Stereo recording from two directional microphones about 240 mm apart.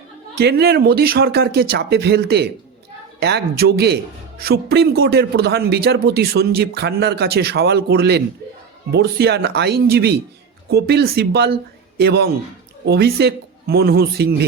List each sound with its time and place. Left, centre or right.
0.3 s a man's voice: right